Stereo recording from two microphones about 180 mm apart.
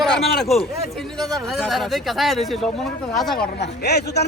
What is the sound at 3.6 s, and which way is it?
Speech, 70° left (ahead or behind).